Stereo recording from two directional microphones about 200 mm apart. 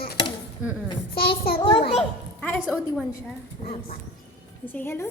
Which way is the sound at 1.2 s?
50° left (ahead or behind).